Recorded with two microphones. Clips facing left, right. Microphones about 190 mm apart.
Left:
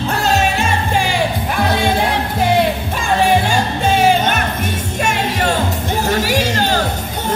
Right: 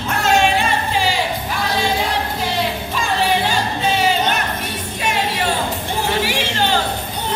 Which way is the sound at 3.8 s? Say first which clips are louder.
Left 5 dB; 50° left (ahead or behind).